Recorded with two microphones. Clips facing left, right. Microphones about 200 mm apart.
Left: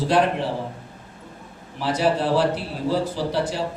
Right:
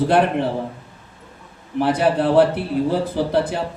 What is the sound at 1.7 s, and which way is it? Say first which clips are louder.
Speech: right 4 dB; 55° right (ahead or behind).